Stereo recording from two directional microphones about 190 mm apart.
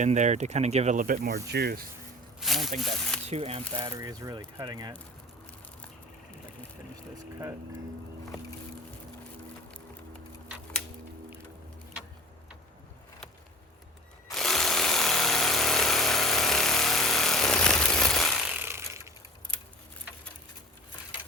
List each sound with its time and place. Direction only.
0.0 s speech: 40° right (ahead or behind); by 1.8 s 60° right (ahead or behind)
2.4 s speech: centre (ahead or behind)
3.2 s speech: 35° right (ahead or behind)
14.3 s jackhammer: centre (ahead or behind)